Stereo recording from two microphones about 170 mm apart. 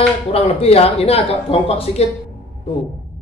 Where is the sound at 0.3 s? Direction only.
35° left (ahead or behind).